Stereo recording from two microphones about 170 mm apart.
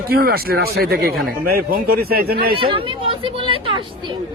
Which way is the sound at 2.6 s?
30° right (ahead or behind).